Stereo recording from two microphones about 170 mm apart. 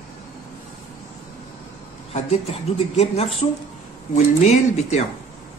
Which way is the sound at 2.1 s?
40° left (ahead or behind).